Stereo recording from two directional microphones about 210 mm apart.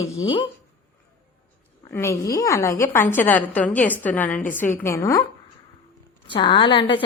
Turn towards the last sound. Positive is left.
turn(degrees=25)  # may be behind; listen again after turning